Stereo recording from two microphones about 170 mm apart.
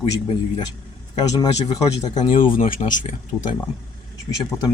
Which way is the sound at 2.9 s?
50° left (ahead or behind).